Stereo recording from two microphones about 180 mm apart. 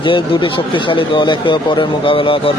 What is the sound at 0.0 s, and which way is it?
Speech, 30° left (ahead or behind).